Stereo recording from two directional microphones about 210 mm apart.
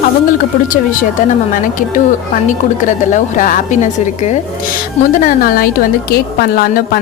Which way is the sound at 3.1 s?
35° left (ahead or behind).